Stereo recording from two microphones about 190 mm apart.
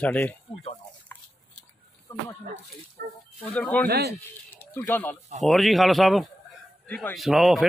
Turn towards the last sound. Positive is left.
turn(degrees=0)  # may be behind; listen again after turning